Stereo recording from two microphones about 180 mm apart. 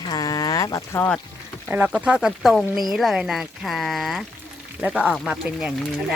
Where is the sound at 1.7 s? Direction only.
10° right (ahead or behind).